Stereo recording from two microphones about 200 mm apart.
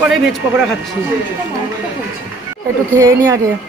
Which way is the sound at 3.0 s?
15° right (ahead or behind).